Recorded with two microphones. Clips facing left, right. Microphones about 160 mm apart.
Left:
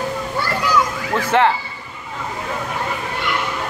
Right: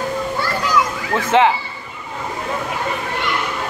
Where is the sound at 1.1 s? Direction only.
15° right (ahead or behind).